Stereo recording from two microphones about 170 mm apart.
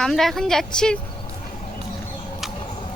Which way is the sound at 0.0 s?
Centre (ahead or behind).